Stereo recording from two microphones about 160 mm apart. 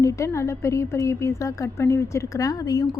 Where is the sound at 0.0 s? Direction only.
20° left (ahead or behind).